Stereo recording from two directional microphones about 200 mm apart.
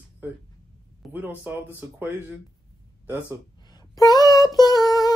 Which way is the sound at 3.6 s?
20° left (ahead or behind).